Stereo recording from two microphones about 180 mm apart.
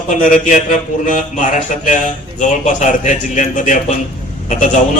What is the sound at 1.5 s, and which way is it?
A man's voice, 45° left (ahead or behind).